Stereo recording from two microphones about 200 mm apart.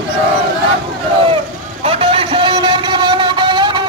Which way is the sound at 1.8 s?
30° right (ahead or behind).